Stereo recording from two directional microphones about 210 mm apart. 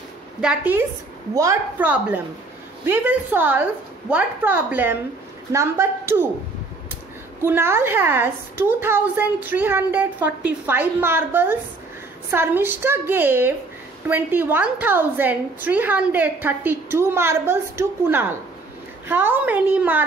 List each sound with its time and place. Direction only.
0.4 s a woman's voice: 5° right (ahead or behind)
7.4 s a woman's voice: 10° right (ahead or behind)